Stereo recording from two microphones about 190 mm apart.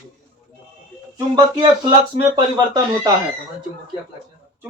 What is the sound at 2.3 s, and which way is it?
Speech, 25° right (ahead or behind).